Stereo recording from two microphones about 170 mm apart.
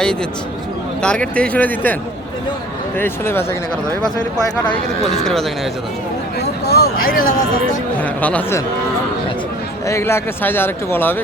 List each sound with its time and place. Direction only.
0.0 s speech: 5° left (ahead or behind)
3.0 s speech: 15° left (ahead or behind)
4.9 s speech: 40° left (ahead or behind)
5.2 s speech: centre (ahead or behind)
6.4 s speech: 70° left (ahead or behind)
7.9 s speech: 10° left (ahead or behind)
9.8 s speech: 15° left (ahead or behind)